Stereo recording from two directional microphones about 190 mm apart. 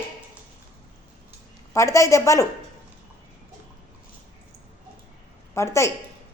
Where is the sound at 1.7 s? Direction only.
15° left (ahead or behind).